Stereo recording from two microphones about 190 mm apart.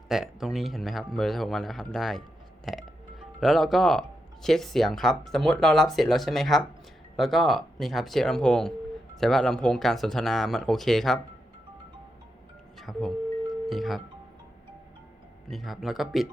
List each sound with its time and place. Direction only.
0.1 s speech: centre (ahead or behind)
2.6 s music: centre (ahead or behind)
4.4 s speech: centre (ahead or behind)
12.8 s music: centre (ahead or behind)
15.4 s speech: centre (ahead or behind)